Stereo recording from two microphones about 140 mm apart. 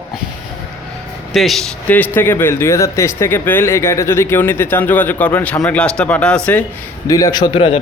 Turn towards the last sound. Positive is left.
turn(degrees=40)  # may be behind; listen again after turning